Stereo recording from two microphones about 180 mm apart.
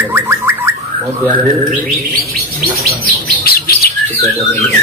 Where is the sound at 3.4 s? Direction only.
55° left (ahead or behind).